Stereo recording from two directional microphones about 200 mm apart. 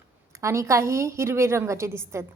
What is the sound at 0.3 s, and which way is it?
A woman's voice, 15° right (ahead or behind).